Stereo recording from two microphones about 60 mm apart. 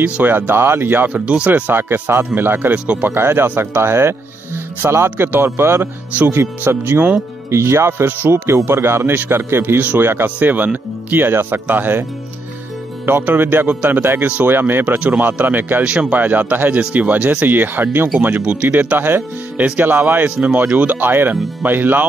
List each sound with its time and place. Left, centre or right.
0.0 s speech: right
1.1 s speech: right
1.7 s speech: right
5.1 s speech: right
7.5 s speech: right
9.8 s speech: right
13.2 s speech: right
15.8 s speech: centre
18.4 s speech: right
18.7 s speech: right